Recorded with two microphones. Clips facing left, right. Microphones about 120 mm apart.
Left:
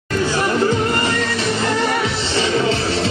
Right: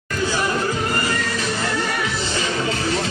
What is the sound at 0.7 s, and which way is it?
Music, 30° left (ahead or behind).